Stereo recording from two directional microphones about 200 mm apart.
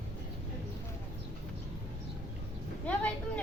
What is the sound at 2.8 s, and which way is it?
Speech, 5° left (ahead or behind).